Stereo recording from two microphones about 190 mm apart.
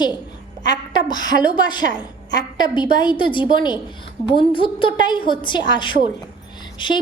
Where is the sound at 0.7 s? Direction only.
25° left (ahead or behind).